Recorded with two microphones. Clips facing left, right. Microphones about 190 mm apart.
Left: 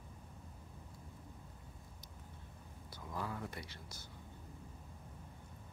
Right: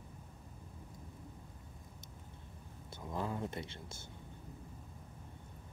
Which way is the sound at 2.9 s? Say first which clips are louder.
Right 4 dB; 20° right (ahead or behind).